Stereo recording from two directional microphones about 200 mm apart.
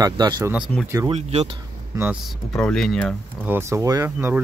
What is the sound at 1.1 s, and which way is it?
Speech, 30° right (ahead or behind).